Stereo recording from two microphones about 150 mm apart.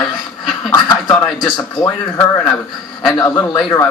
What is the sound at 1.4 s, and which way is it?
Speech, 30° left (ahead or behind).